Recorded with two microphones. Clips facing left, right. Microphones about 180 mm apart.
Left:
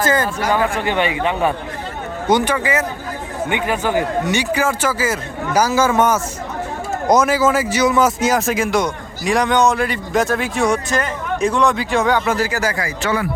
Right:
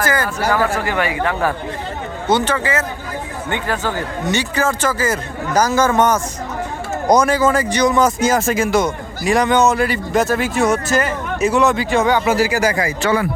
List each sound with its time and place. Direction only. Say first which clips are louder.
0.0 s speech: left 1 dB; 25° left (ahead or behind); by 12.9 s 20° right (ahead or behind)
13.0 s speech: right 2 dB; 30° right (ahead or behind)